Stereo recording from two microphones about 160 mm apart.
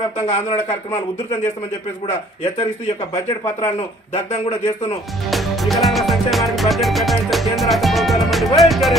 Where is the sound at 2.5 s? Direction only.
35° left (ahead or behind).